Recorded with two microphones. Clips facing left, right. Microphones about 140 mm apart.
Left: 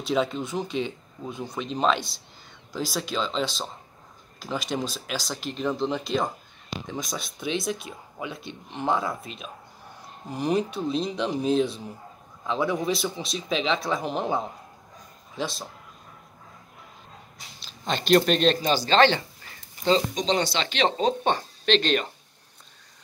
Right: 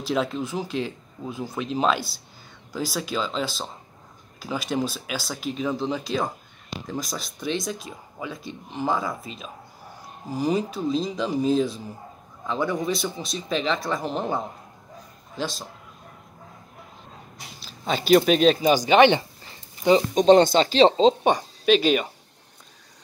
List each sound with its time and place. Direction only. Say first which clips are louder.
0.0 s speech: even; centre (ahead or behind)
17.6 s speech: right 2 dB; 5° right (ahead or behind)
20.2 s speech: right 10 dB; 50° right (ahead or behind); by 20.9 s 35° right (ahead or behind)
21.0 s speech: right 5 dB; 15° right (ahead or behind)